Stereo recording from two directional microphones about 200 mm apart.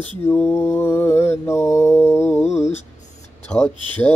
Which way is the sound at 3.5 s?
10° left (ahead or behind).